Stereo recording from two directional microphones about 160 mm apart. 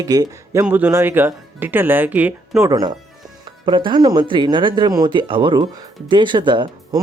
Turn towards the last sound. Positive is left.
turn(degrees=-30)  # may be behind; listen again after turning